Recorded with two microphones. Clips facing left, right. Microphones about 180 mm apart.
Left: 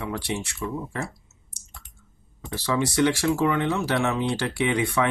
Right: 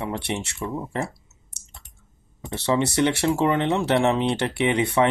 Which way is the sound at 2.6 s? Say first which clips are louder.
Right 1 dB; 25° right (ahead or behind).